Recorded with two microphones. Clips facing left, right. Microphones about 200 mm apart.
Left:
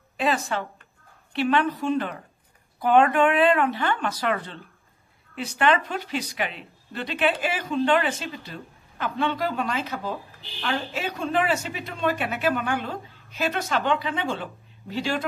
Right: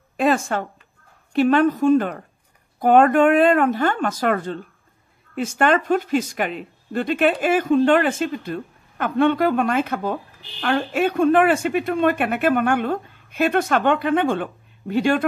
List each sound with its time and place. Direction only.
0.2 s a woman's voice: 50° right (ahead or behind)